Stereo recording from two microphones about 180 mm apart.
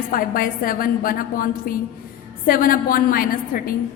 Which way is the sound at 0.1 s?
50° left (ahead or behind).